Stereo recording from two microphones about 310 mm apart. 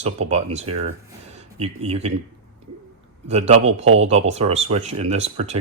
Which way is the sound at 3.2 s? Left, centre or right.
Right.